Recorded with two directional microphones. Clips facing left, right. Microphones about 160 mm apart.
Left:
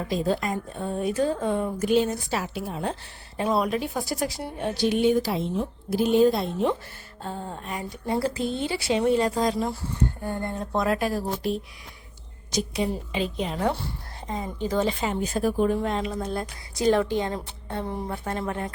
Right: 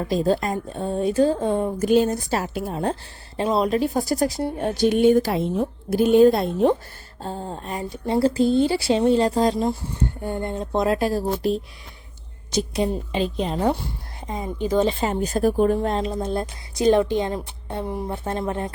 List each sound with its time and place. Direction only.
0.1 s speech: 35° right (ahead or behind)
1.9 s a woman's voice: 45° right (ahead or behind)
3.3 s a woman's voice: 25° right (ahead or behind)
3.7 s a woman's voice: 40° right (ahead or behind); by 6.7 s 55° right (ahead or behind)
7.2 s a woman's voice: 35° right (ahead or behind)
13.6 s a woman's voice: 20° right (ahead or behind)
15.0 s a woman's voice: 40° right (ahead or behind); by 18.6 s 25° right (ahead or behind)